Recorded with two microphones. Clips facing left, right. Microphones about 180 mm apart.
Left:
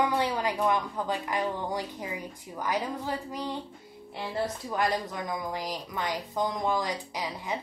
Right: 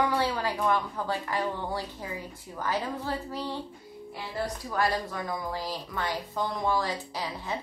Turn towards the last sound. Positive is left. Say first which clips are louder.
# even
turn(degrees=15)  # may be behind; listen again after turning